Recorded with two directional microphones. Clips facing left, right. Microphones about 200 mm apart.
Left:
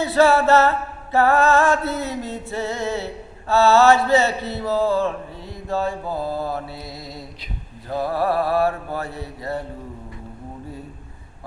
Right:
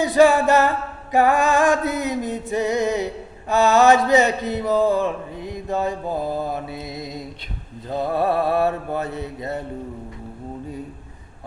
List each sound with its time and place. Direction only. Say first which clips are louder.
0.0 s mantra: right 1 dB; 15° right (ahead or behind)